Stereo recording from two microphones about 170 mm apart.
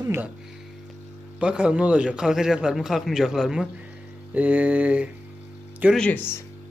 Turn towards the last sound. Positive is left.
turn(degrees=10)  # may be behind; listen again after turning